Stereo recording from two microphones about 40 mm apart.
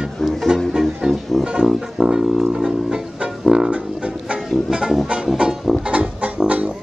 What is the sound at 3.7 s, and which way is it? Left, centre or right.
Music, right.